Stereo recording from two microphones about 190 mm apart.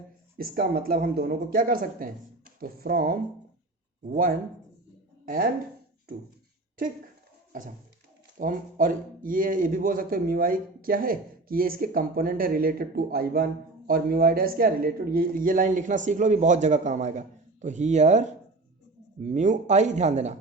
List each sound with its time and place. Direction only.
0.3 s speech: 55° right (ahead or behind)
8.4 s speech: 45° right (ahead or behind)